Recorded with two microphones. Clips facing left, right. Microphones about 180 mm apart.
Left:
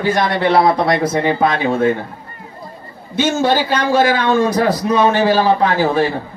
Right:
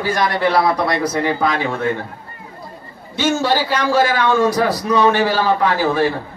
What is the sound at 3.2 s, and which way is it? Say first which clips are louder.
A man's voice: left 2 dB; 20° left (ahead or behind).